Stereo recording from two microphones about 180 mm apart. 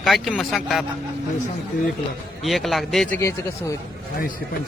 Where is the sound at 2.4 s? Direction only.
Centre (ahead or behind).